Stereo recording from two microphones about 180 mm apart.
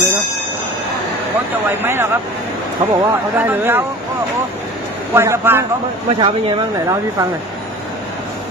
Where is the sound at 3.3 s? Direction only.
10° right (ahead or behind).